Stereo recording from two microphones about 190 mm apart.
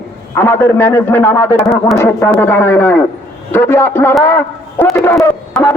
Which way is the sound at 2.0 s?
10° left (ahead or behind).